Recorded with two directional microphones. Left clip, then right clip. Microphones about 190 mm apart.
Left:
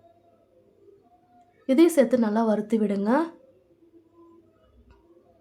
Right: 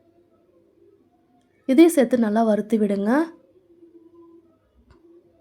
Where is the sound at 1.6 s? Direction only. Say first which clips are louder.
Right 3 dB; 20° right (ahead or behind).